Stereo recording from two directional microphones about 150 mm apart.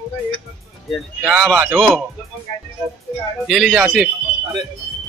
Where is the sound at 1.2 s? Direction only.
5° right (ahead or behind).